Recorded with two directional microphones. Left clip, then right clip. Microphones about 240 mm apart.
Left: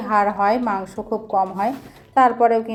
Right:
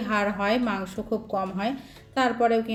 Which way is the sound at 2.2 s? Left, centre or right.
Centre.